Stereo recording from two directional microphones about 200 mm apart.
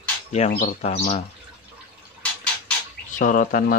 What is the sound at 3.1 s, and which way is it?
Speech, 40° left (ahead or behind).